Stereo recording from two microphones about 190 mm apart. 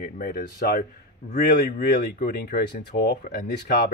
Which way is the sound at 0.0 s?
50° left (ahead or behind).